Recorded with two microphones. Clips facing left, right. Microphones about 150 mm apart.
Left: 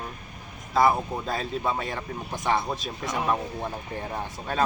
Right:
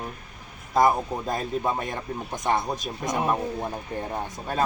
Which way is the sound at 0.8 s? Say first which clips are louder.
Right 1 dB; 15° right (ahead or behind).